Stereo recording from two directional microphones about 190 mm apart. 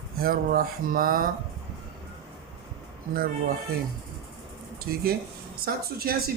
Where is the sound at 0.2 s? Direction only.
50° right (ahead or behind).